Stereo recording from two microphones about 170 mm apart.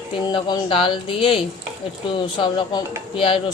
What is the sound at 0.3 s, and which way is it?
Speech, 25° left (ahead or behind).